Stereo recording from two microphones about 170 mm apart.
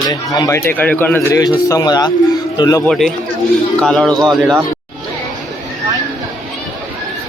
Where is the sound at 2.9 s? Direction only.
Centre (ahead or behind).